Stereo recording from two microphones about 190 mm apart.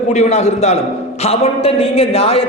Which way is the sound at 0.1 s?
35° left (ahead or behind).